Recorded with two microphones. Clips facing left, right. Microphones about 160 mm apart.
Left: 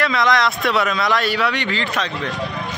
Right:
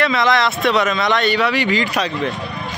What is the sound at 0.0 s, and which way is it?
A man's voice, centre (ahead or behind).